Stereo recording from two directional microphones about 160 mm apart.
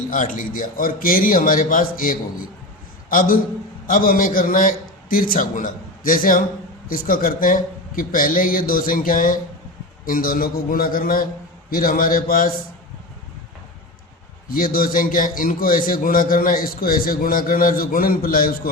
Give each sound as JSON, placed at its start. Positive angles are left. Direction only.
{"t": 0.1, "sound": "a man's voice", "side_deg": 55}
{"t": 14.5, "sound": "a man's voice", "side_deg": 65}